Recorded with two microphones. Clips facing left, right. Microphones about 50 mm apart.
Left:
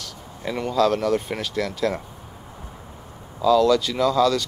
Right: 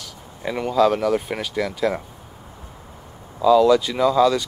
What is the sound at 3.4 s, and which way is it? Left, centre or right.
Speech, centre.